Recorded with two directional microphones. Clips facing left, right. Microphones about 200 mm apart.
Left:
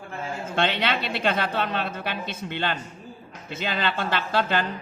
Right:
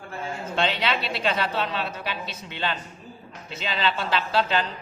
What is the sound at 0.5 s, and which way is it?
A woman's voice, 55° left (ahead or behind).